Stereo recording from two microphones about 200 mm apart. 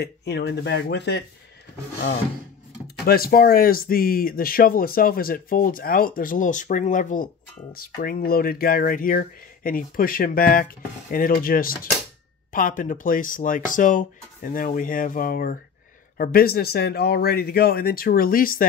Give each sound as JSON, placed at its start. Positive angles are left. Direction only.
{"t": 0.0, "sound": "speech", "side_deg": 60}
{"t": 3.1, "sound": "speech", "side_deg": 50}